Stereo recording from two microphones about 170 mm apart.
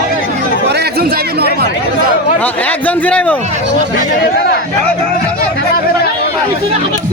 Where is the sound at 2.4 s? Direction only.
10° left (ahead or behind).